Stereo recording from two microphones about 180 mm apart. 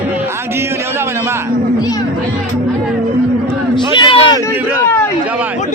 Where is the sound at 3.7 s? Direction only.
25° left (ahead or behind).